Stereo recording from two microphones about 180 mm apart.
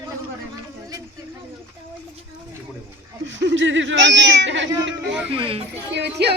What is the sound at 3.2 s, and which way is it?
Speech, 90° right.